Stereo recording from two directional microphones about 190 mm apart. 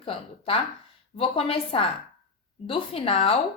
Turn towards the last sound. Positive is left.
turn(degrees=30)  # may be behind; listen again after turning